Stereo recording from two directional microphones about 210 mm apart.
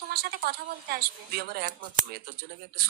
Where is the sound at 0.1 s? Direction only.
50° right (ahead or behind).